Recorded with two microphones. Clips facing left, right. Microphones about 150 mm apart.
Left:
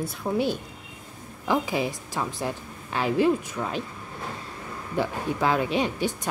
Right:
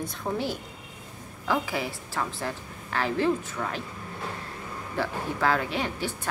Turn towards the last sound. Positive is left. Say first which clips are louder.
# left 5 dB
turn(degrees=20)  # may be behind; listen again after turning